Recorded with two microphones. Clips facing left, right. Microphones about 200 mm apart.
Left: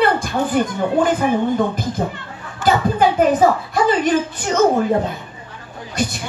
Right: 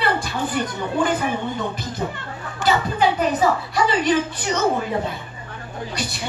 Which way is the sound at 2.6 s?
50° left (ahead or behind).